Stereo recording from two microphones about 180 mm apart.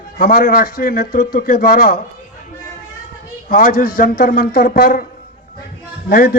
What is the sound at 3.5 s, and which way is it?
A man's voice, 50° left (ahead or behind).